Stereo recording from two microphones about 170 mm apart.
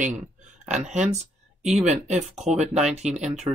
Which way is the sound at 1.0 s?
40° right (ahead or behind).